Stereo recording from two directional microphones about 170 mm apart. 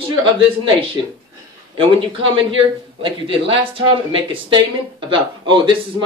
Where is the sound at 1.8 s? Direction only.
30° right (ahead or behind).